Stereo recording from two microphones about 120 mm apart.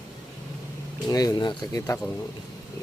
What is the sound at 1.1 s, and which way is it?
Speech, 30° left (ahead or behind).